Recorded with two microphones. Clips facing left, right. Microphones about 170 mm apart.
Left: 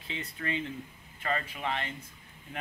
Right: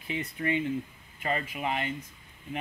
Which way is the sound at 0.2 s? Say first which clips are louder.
Right 5 dB; 20° right (ahead or behind).